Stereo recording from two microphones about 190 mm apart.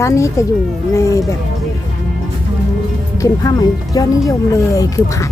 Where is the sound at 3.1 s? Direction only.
20° left (ahead or behind).